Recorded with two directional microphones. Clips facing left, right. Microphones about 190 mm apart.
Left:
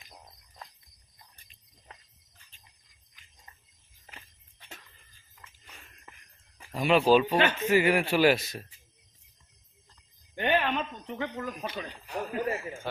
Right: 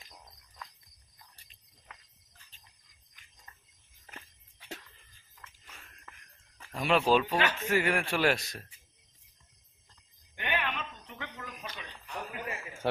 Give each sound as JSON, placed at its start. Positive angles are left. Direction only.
{"t": 6.6, "sound": "a man's voice", "side_deg": 5}
{"t": 10.3, "sound": "a sound", "side_deg": 35}
{"t": 11.7, "sound": "speech", "side_deg": 40}
{"t": 12.8, "sound": "speech", "side_deg": -65}